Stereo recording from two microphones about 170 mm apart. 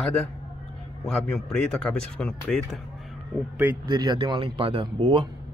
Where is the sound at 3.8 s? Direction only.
25° right (ahead or behind).